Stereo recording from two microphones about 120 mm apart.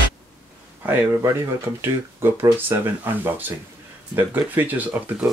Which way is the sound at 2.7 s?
25° right (ahead or behind).